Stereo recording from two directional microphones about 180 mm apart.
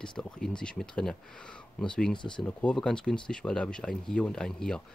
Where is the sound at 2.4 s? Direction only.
5° left (ahead or behind).